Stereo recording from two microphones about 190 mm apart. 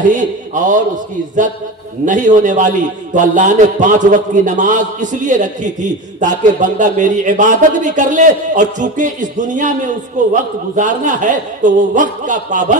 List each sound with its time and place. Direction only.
0.1 s a man's voice: 40° right (ahead or behind)
2.0 s a man's voice: 40° right (ahead or behind)